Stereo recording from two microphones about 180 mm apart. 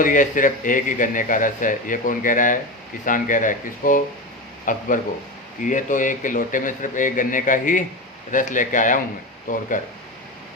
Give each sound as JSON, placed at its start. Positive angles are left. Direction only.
{"t": 0.0, "sound": "a man's voice", "side_deg": 50}